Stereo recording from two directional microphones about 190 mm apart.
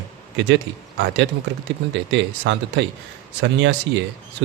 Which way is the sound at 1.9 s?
70° right (ahead or behind).